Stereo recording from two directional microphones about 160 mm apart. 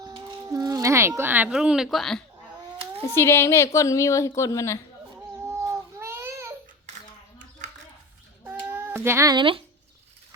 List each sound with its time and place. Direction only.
0.0 s speech: 25° right (ahead or behind); by 2.2 s centre (ahead or behind)
3.1 s a woman's voice: 15° left (ahead or behind)
6.0 s child singing: 15° right (ahead or behind)
8.4 s babbling: 15° right (ahead or behind); by 9.6 s 30° right (ahead or behind)